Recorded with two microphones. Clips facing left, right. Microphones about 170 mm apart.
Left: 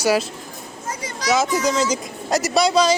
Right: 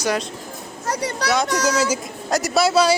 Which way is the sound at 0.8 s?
70° right (ahead or behind).